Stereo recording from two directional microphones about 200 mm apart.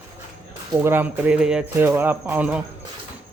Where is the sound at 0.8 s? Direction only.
10° right (ahead or behind).